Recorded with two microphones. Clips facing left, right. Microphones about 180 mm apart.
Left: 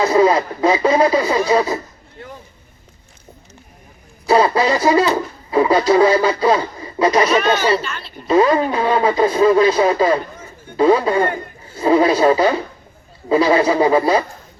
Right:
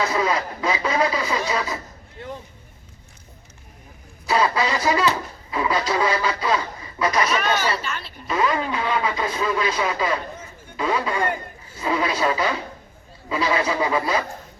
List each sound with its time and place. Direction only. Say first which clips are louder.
0.0 s speech: left 9 dB; 35° left (ahead or behind)
4.3 s speech: left 7 dB; 35° left (ahead or behind)